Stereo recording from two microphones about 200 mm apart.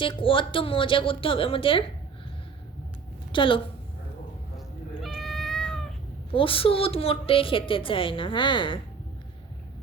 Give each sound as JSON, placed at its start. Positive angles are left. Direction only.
{"t": 0.0, "sound": "a woman's voice", "side_deg": 25}
{"t": 3.3, "sound": "a woman's voice", "side_deg": 25}
{"t": 5.0, "sound": "cat", "side_deg": 0}
{"t": 6.3, "sound": "a woman's voice", "side_deg": 25}